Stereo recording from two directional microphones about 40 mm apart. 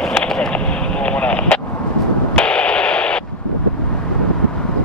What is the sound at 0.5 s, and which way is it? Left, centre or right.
Vehicle, left.